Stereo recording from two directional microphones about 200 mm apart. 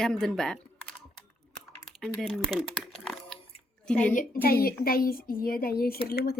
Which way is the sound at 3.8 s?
5° left (ahead or behind).